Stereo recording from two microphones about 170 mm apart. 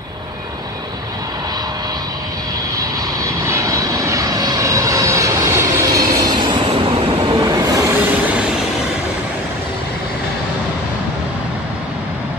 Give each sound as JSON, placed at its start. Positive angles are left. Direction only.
{"t": 2.8, "sound": "vehicle", "side_deg": -20}